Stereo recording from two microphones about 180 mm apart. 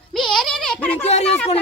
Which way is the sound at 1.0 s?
35° left (ahead or behind).